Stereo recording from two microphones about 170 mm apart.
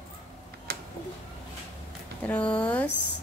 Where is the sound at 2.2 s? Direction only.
5° left (ahead or behind).